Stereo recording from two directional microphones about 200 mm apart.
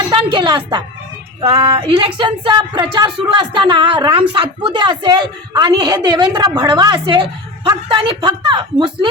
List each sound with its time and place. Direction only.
0.1 s speech: 25° right (ahead or behind)